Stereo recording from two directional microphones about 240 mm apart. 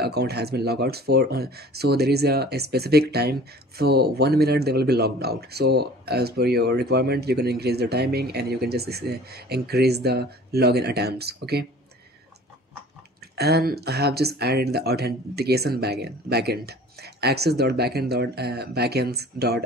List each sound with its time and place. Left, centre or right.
0.0 s speech: right
13.4 s speech: right